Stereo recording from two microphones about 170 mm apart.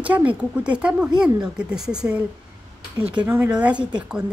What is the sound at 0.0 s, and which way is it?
A woman's voice, 10° right (ahead or behind).